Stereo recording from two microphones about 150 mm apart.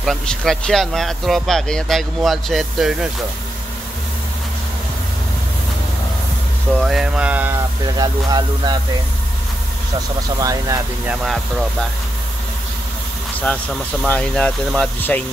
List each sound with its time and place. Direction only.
0.0 s speech: 5° left (ahead or behind)
6.8 s speech: 5° right (ahead or behind)
7.8 s speech: 25° right (ahead or behind)
10.4 s speech: 25° right (ahead or behind)
11.1 s speech: centre (ahead or behind)
14.0 s speech: 10° left (ahead or behind)